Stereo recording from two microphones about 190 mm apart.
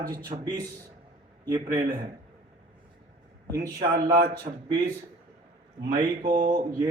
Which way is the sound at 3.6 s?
50° right (ahead or behind).